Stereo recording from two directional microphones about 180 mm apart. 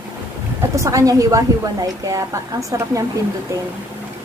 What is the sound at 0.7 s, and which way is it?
A woman's voice, 20° right (ahead or behind).